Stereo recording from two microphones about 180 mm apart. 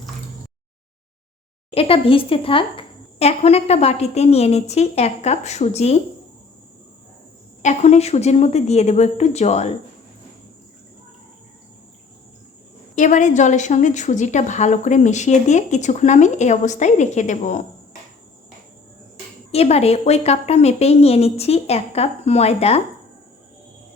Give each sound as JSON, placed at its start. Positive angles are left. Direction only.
{"t": 1.7, "sound": "a woman's voice", "side_deg": 30}
{"t": 7.6, "sound": "a woman's voice", "side_deg": 40}
{"t": 13.0, "sound": "a woman's voice", "side_deg": 45}
{"t": 19.5, "sound": "a woman's voice", "side_deg": 35}